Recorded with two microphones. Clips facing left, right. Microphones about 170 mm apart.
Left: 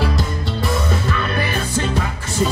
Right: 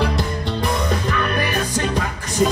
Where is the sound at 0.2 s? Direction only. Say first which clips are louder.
Right 1 dB; 15° right (ahead or behind).